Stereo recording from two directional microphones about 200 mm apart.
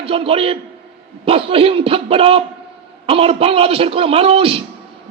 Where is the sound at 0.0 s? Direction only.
30° right (ahead or behind).